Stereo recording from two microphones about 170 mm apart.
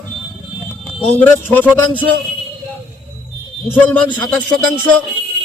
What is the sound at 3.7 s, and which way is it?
Speech, 5° left (ahead or behind).